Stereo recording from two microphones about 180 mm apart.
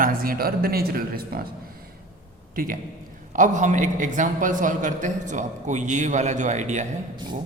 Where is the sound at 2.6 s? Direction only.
50° right (ahead or behind).